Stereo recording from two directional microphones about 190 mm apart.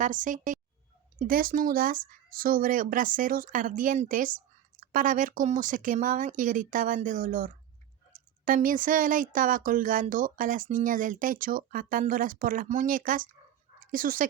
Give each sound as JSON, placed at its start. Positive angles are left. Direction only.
{"t": 0.0, "sound": "speech", "side_deg": -45}